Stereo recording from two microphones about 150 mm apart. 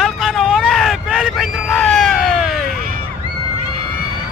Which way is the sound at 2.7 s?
75° right (ahead or behind).